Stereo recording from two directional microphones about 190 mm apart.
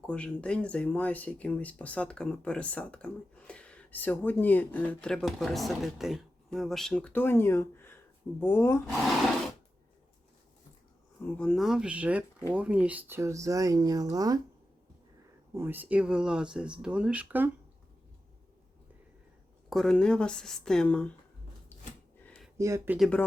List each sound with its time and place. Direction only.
0.1 s speech: 5° left (ahead or behind)
11.3 s speech: 5° left (ahead or behind); by 14.4 s 20° right (ahead or behind)
15.5 s speech: 10° right (ahead or behind)
19.7 s speech: 5° left (ahead or behind)
22.2 s a sound: 10° left (ahead or behind)
22.5 s speech: 15° right (ahead or behind)
23.0 s speech: 5° left (ahead or behind)